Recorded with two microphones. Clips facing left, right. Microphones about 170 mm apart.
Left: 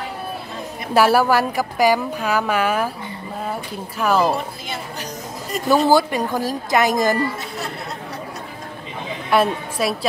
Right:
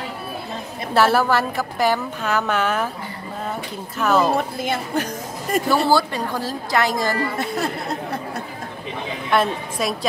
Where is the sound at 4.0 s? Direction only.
10° left (ahead or behind).